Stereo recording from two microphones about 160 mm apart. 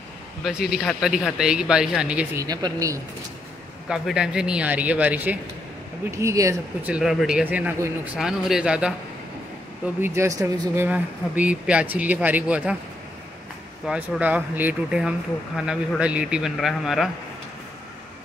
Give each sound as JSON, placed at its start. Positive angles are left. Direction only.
{"t": 0.4, "sound": "speech", "side_deg": -5}
{"t": 2.3, "sound": "speech", "side_deg": -25}
{"t": 3.9, "sound": "speech", "side_deg": -5}
{"t": 6.1, "sound": "speech", "side_deg": -20}
{"t": 6.9, "sound": "speech", "side_deg": -5}
{"t": 9.9, "sound": "speech", "side_deg": -15}
{"t": 13.8, "sound": "speech", "side_deg": -5}